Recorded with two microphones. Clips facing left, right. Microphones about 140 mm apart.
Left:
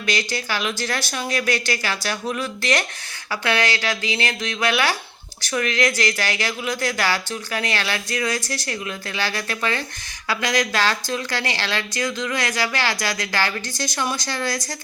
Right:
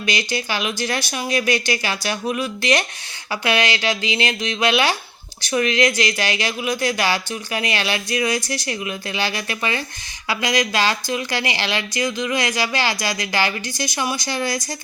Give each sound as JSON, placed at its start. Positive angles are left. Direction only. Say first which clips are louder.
{"t": 0.0, "sound": "speech", "louder": "right 1 dB", "side_deg": -15}